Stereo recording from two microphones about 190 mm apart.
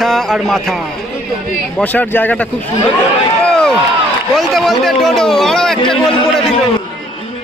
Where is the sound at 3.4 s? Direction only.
5° left (ahead or behind).